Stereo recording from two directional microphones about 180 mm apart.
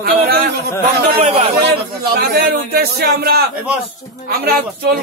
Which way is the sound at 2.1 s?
60° right (ahead or behind).